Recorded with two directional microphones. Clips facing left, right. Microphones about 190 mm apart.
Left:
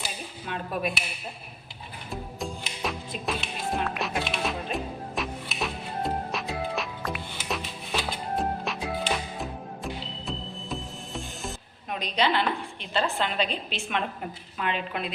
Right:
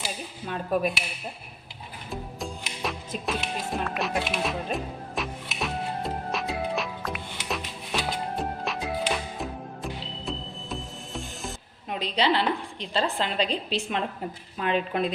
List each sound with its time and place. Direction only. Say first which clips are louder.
2.0 s music: even; centre (ahead or behind)
11.9 s a woman's voice: right 1 dB; 30° right (ahead or behind)